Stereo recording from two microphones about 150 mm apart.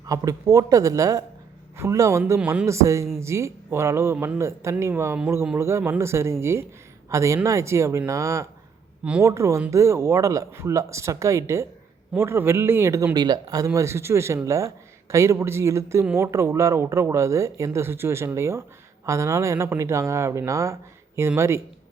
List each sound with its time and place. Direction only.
0.0 s speech: 25° right (ahead or behind)
2.4 s speech: 10° right (ahead or behind)
2.6 s speech: 20° right (ahead or behind)
9.0 s speech: 10° right (ahead or behind)
9.3 s speech: 20° right (ahead or behind)